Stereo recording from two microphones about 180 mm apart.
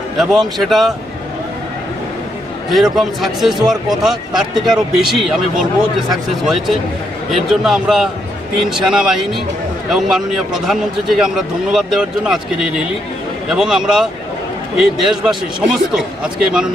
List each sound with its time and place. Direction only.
0.2 s a man's voice: centre (ahead or behind)
2.6 s a man's voice: centre (ahead or behind)
13.5 s a man's voice: 5° right (ahead or behind)